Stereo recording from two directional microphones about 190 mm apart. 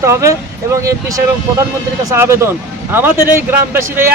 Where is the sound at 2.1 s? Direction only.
15° right (ahead or behind).